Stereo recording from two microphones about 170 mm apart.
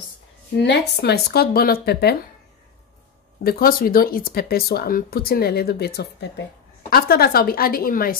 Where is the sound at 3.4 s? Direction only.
65° left (ahead or behind).